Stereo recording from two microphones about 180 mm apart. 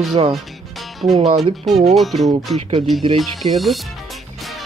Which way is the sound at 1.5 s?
Centre (ahead or behind).